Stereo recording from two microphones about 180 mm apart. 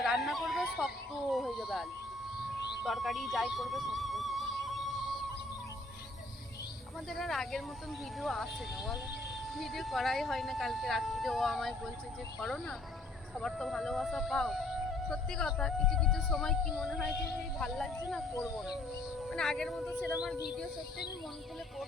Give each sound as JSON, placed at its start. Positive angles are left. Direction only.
{"t": 0.0, "sound": "a sound", "side_deg": 0}
{"t": 1.3, "sound": "speech", "side_deg": 0}
{"t": 7.1, "sound": "speech", "side_deg": 0}
{"t": 9.6, "sound": "speech", "side_deg": 0}